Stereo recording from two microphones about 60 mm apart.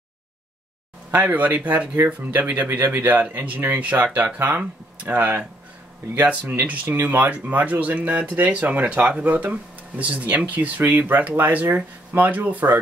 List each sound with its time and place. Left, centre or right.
1.1 s speech: right
6.6 s speech: right